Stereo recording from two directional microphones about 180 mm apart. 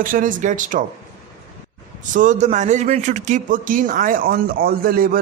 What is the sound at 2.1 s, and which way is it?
A woman's voice, 45° right (ahead or behind).